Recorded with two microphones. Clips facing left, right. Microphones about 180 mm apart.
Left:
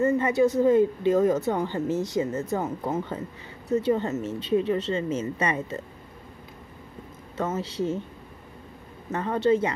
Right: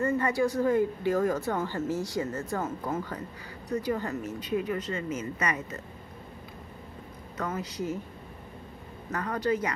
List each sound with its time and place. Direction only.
0.0 s a woman's voice: 20° left (ahead or behind)
7.3 s a woman's voice: 25° left (ahead or behind)
9.1 s a woman's voice: 25° left (ahead or behind)